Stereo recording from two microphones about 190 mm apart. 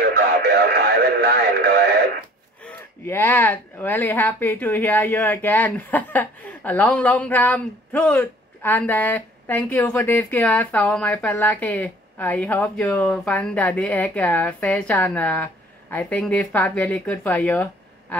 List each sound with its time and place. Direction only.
0.1 s radio: 60° right (ahead or behind)
2.6 s speech: 10° left (ahead or behind)